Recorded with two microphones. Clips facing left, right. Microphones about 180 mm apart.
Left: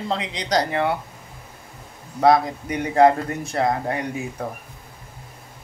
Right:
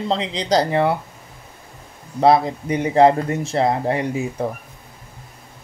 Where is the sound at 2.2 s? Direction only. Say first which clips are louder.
Right 2 dB; 30° right (ahead or behind).